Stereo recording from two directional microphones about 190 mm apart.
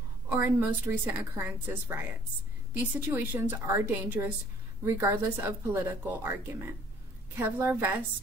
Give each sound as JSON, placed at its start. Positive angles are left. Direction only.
{"t": 0.3, "sound": "speech", "side_deg": -10}
{"t": 3.1, "sound": "speech", "side_deg": -10}